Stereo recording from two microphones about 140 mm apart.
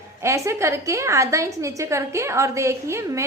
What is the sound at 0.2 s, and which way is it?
A woman's voice, 20° right (ahead or behind).